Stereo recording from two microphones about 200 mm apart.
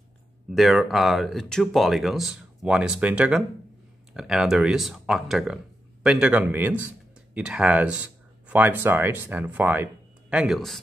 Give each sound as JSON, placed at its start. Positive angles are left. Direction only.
{"t": 0.5, "sound": "speech", "side_deg": 0}